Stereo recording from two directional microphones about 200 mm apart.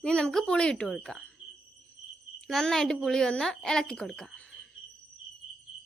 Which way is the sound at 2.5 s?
Centre (ahead or behind).